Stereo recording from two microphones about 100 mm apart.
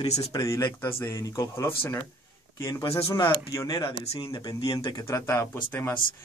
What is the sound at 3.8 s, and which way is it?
Speech, 60° left (ahead or behind).